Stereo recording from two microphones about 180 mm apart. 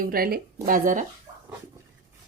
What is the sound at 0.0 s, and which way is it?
A woman's voice, 55° right (ahead or behind).